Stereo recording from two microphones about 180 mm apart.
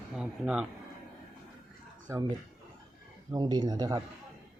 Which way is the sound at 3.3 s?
20° right (ahead or behind).